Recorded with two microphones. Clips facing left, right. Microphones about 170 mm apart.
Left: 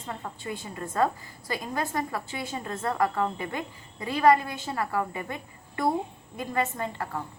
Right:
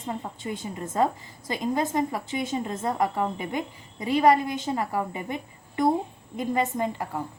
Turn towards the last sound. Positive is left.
turn(degrees=-15)  # may be behind; listen again after turning